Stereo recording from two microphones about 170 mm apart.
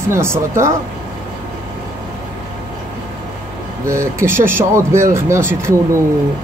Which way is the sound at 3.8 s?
15° right (ahead or behind).